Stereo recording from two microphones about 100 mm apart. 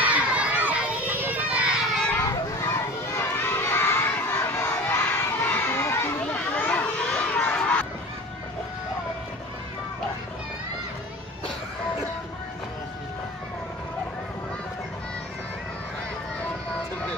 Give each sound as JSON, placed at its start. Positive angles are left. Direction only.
{"t": 0.0, "sound": "children playing", "side_deg": -10}
{"t": 2.6, "sound": "crowd", "side_deg": 25}
{"t": 6.2, "sound": "children playing", "side_deg": 15}